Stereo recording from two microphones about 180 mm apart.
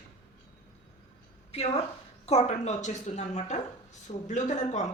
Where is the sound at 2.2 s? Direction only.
35° left (ahead or behind).